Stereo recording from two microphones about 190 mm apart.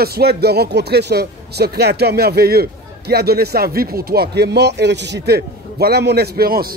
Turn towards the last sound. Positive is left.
turn(degrees=-50)  # may be behind; listen again after turning